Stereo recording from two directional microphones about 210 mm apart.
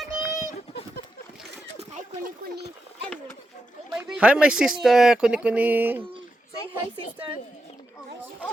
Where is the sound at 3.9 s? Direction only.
5° right (ahead or behind).